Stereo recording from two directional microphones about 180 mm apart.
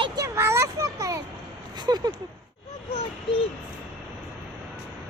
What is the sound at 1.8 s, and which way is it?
Speech, 20° right (ahead or behind).